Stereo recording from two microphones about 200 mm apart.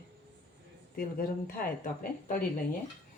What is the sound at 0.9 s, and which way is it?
Speech, 45° left (ahead or behind).